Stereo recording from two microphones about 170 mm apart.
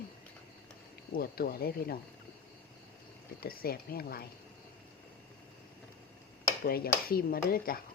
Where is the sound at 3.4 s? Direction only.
60° left (ahead or behind).